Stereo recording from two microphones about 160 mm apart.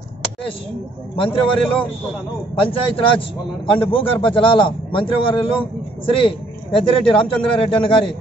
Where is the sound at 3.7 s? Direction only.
35° left (ahead or behind).